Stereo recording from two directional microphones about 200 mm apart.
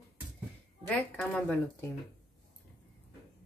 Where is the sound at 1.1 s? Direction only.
5° left (ahead or behind).